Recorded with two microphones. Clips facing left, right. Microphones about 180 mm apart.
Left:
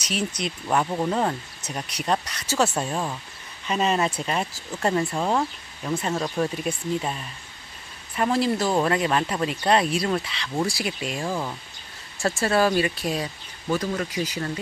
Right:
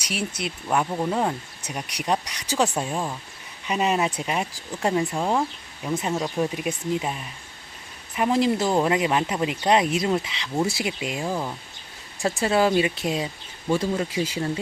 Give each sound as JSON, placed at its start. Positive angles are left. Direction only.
{"t": 0.0, "sound": "speech", "side_deg": -10}